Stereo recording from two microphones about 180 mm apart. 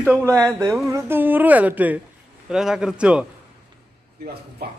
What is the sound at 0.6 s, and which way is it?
A woman's voice, 20° right (ahead or behind).